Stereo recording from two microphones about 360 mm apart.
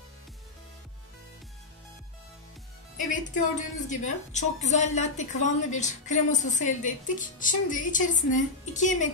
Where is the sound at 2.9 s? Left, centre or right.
Left.